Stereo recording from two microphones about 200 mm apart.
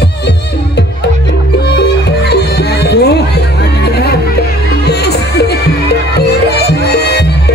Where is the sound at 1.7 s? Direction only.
55° left (ahead or behind).